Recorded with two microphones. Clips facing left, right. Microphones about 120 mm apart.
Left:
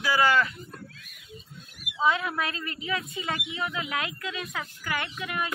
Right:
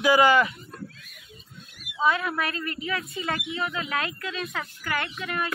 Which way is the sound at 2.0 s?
20° left (ahead or behind).